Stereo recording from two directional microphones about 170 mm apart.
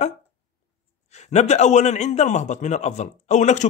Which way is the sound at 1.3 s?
40° left (ahead or behind).